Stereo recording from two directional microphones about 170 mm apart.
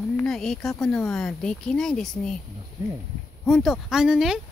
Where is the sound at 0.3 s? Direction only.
Centre (ahead or behind).